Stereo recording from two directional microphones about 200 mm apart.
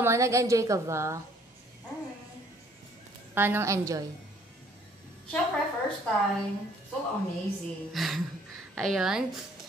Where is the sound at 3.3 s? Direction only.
10° right (ahead or behind).